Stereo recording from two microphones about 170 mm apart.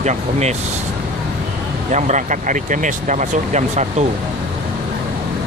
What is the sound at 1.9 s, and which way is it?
Speech, 45° right (ahead or behind).